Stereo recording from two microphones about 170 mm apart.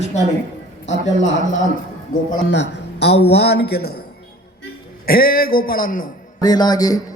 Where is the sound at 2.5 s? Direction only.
90° left.